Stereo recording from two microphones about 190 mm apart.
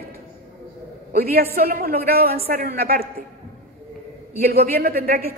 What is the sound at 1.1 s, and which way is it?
A man's voice, 50° right (ahead or behind).